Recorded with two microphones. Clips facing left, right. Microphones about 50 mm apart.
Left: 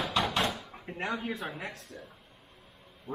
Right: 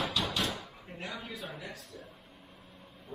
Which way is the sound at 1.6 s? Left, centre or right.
Left.